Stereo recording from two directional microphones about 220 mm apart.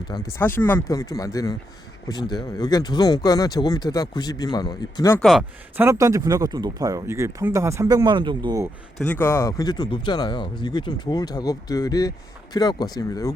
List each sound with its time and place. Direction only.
0.1 s speech: 15° left (ahead or behind)
5.2 s speech: 5° right (ahead or behind)
9.0 s speech: 10° left (ahead or behind)